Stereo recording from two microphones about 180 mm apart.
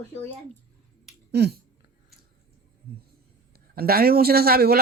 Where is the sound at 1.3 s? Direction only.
65° right (ahead or behind).